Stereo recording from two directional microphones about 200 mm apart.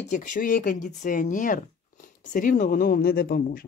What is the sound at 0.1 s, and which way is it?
Speech, 40° left (ahead or behind).